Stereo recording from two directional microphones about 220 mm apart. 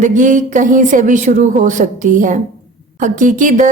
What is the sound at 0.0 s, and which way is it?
Speech, 35° right (ahead or behind).